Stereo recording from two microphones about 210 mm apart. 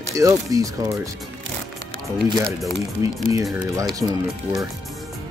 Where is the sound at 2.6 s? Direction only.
Centre (ahead or behind).